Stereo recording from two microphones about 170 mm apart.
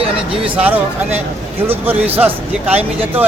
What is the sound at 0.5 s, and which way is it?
Speech, 10° right (ahead or behind).